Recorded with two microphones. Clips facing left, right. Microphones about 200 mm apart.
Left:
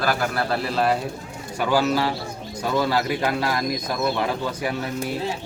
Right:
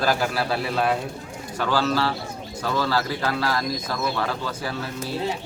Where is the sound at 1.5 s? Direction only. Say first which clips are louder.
Left 2 dB; 10° left (ahead or behind).